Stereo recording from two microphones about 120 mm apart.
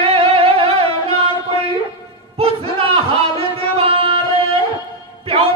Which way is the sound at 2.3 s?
50° right (ahead or behind).